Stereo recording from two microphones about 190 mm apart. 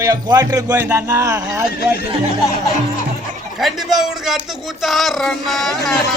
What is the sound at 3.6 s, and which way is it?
Speech, centre (ahead or behind).